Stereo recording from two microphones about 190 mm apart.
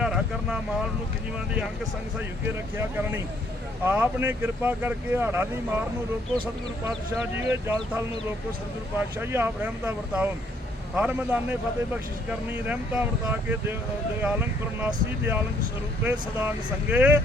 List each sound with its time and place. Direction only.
0.0 s vehicle: 5° right (ahead or behind)
2.1 s speech: 10° right (ahead or behind)
6.3 s speech: 25° right (ahead or behind)
7.2 s speech: 10° right (ahead or behind)
16.9 s speech: 10° right (ahead or behind)